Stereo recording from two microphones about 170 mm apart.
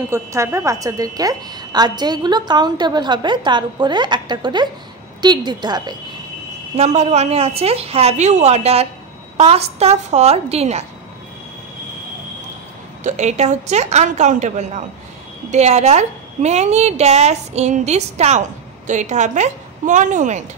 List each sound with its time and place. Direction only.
0.1 s a woman's voice: 15° right (ahead or behind)
6.8 s a woman's voice: 40° right (ahead or behind)
13.0 s a woman's voice: 45° right (ahead or behind)